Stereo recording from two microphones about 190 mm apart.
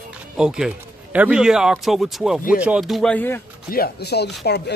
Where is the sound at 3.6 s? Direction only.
50° left (ahead or behind).